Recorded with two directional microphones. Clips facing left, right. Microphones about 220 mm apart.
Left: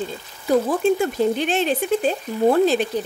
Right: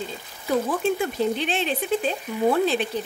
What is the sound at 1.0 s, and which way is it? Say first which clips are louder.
Speech: left 4 dB; 45° left (ahead or behind).